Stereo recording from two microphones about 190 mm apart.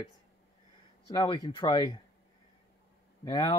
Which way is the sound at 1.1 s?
20° left (ahead or behind).